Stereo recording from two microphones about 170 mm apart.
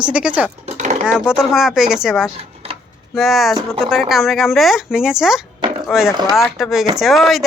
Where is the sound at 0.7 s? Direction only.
45° right (ahead or behind).